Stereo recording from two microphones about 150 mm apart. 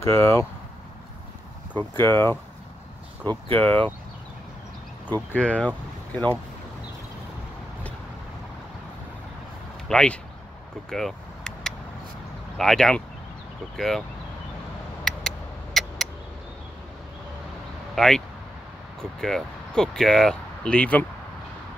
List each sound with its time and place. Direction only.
0.0 s speech: 15° left (ahead or behind)
1.7 s speech: 15° left (ahead or behind)
3.5 s speech: 10° left (ahead or behind)
5.0 s speech: 10° left (ahead or behind)
9.8 s speech: 5° left (ahead or behind)
10.9 s vehicle: 5° left (ahead or behind)
12.5 s speech: 5° left (ahead or behind)
15.0 s a sound: 5° left (ahead or behind)
17.9 s speech: centre (ahead or behind)